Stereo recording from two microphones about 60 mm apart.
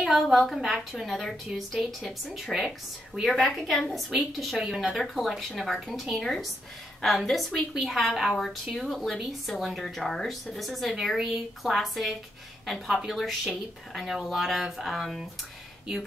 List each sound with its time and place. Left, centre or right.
0.1 s a woman's voice: centre